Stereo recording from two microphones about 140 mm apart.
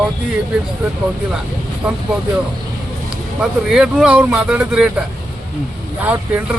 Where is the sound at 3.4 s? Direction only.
5° right (ahead or behind).